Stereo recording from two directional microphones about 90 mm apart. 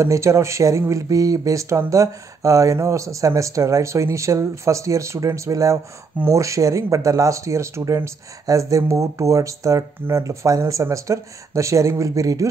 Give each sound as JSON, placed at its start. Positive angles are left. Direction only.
{"t": 0.0, "sound": "speech", "side_deg": -35}